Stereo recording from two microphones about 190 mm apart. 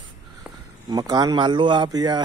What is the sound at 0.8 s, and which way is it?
A man's voice, 20° right (ahead or behind).